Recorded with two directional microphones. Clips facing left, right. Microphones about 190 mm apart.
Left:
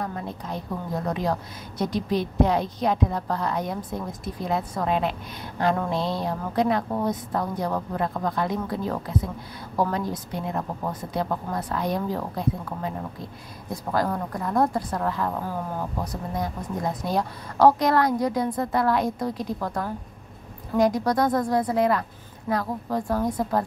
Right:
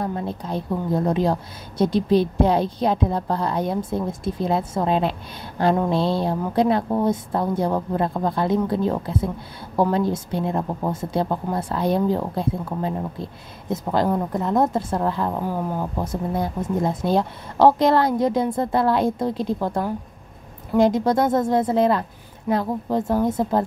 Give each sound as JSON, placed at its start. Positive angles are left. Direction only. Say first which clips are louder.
{"t": 0.0, "sound": "a woman's voice", "louder": "right 5 dB", "side_deg": -30}